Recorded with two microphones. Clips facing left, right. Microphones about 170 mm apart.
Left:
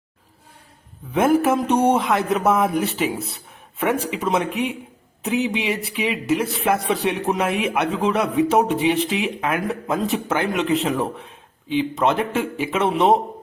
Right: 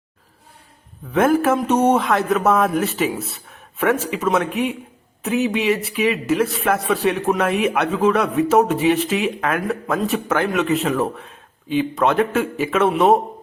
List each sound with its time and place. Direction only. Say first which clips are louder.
1.1 s a man's voice: right 1 dB; 15° left (ahead or behind)
12.0 s a man's voice: right 4 dB; 15° left (ahead or behind)